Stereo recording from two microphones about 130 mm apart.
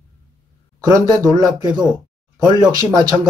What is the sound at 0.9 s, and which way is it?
Speech, 30° right (ahead or behind).